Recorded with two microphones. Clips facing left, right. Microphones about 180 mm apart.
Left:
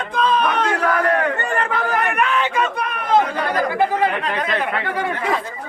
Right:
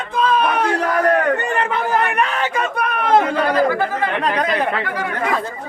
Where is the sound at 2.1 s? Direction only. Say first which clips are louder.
Even; 40° right (ahead or behind); by 3.2 s 60° right (ahead or behind).